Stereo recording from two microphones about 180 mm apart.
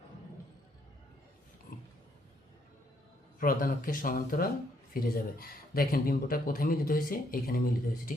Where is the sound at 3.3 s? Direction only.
50° left (ahead or behind).